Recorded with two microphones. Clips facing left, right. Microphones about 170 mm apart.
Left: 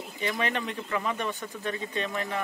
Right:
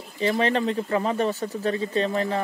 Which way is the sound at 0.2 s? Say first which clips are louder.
Right 8 dB; 35° right (ahead or behind).